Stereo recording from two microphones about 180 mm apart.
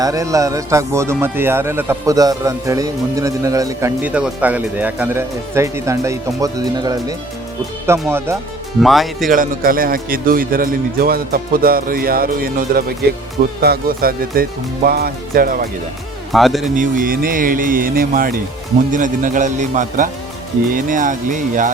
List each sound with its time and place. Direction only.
0.0 s speech: 20° right (ahead or behind)
8.8 s speech: centre (ahead or behind)
9.3 s a man's voice: 50° right (ahead or behind)
16.3 s speech: centre (ahead or behind)
16.7 s a man's voice: 50° right (ahead or behind)